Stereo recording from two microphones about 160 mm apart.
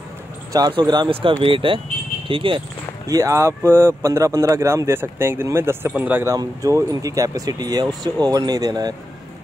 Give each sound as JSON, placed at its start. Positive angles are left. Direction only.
{"t": 0.5, "sound": "speech", "side_deg": -25}
{"t": 3.1, "sound": "speech", "side_deg": -20}